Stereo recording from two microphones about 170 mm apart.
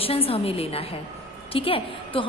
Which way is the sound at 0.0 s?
35° left (ahead or behind).